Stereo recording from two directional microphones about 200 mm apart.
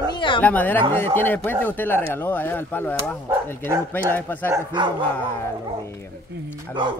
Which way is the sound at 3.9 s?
10° left (ahead or behind).